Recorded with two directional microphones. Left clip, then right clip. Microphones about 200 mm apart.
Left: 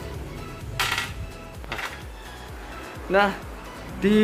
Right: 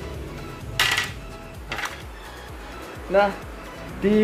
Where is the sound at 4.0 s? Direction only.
15° left (ahead or behind).